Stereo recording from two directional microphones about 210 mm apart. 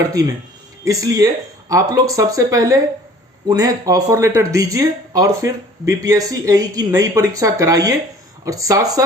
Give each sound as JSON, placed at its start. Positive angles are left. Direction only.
{"t": 0.9, "sound": "speech", "side_deg": -15}